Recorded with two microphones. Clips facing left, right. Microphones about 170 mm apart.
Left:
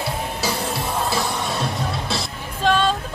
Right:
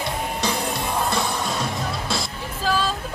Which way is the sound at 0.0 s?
5° left (ahead or behind).